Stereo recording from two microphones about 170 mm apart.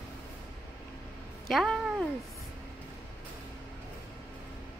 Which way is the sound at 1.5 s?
Centre (ahead or behind).